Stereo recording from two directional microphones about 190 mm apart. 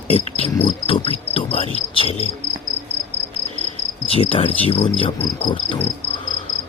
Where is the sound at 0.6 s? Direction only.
30° left (ahead or behind).